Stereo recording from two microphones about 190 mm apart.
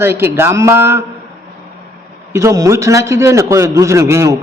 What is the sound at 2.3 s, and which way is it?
A man's voice, 15° right (ahead or behind).